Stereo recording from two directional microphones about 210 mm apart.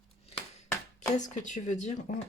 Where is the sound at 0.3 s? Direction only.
30° left (ahead or behind).